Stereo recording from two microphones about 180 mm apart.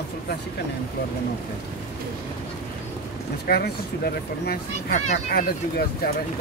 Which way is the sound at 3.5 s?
60° left (ahead or behind).